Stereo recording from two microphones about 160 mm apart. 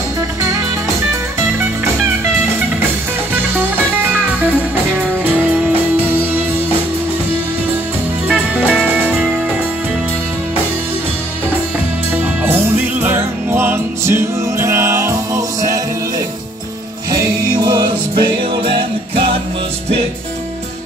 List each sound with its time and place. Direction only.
3.5 s music: 15° right (ahead or behind)
8.3 s music: 10° right (ahead or behind)
13.0 s music: 15° right (ahead or behind)
17.6 s music: 25° right (ahead or behind)